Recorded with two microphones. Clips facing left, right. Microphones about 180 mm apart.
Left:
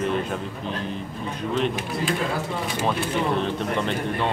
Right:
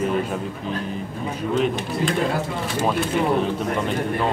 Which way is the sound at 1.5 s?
Centre (ahead or behind).